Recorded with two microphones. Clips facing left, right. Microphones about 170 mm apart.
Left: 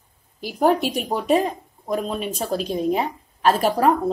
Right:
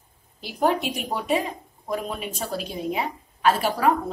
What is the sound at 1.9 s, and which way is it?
Speech, 40° left (ahead or behind).